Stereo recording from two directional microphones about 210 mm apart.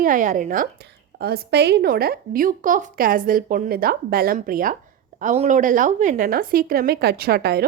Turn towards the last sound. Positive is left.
turn(degrees=-50)  # may be behind; listen again after turning